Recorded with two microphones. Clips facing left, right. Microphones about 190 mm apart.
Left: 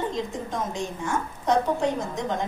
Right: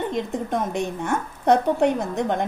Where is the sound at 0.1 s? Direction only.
60° right (ahead or behind).